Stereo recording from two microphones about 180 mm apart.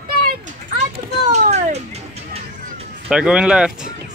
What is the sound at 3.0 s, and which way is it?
Speech, 5° right (ahead or behind).